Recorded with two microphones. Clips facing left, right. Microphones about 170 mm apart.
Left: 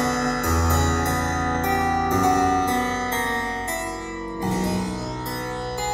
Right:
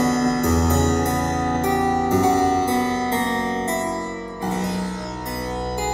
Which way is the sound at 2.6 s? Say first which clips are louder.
Right 3 dB; 10° right (ahead or behind).